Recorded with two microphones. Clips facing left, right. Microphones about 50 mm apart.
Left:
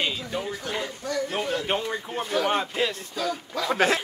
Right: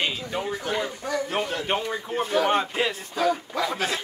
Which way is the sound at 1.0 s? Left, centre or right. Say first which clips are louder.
Left 2 dB; centre.